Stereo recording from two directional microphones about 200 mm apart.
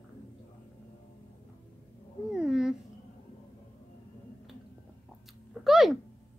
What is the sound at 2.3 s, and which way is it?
Cat, 5° right (ahead or behind).